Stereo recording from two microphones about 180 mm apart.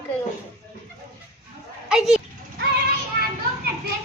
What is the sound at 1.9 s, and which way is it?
Speech, 5° right (ahead or behind).